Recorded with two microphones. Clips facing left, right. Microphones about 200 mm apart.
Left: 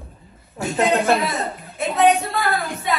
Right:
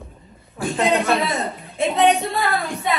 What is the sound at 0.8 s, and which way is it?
A man's voice, centre (ahead or behind).